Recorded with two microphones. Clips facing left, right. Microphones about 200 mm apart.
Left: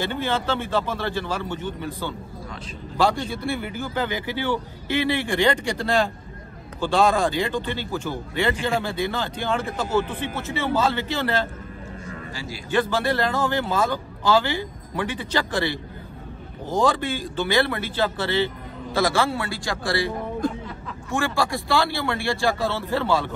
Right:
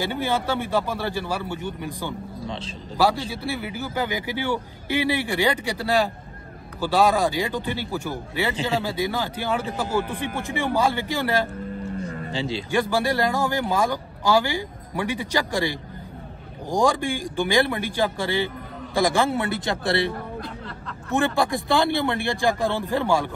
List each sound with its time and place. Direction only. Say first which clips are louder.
0.0 s a man's voice: even; 10° right (ahead or behind)
2.4 s a sound: right 5 dB; 25° right (ahead or behind)
3.0 s a man's voice: even; 5° right (ahead or behind)
12.0 s cattle: right 5 dB; 40° right (ahead or behind)
12.3 s a man's voice: right 7 dB; 25° right (ahead or behind)
12.7 s a man's voice: left 1 dB; 10° right (ahead or behind)
20.4 s speech: left 11 dB; 45° left (ahead or behind)
21.1 s a man's voice: right 2 dB; 20° right (ahead or behind)